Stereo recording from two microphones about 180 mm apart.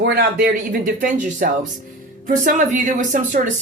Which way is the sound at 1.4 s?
50° right (ahead or behind).